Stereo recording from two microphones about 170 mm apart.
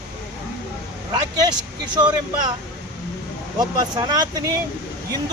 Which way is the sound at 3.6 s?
25° right (ahead or behind).